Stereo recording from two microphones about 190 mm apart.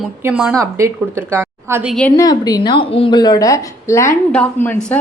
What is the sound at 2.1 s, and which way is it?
A woman's voice, 20° left (ahead or behind).